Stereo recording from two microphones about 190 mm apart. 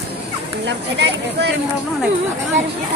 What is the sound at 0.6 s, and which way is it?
Speech, 65° right (ahead or behind).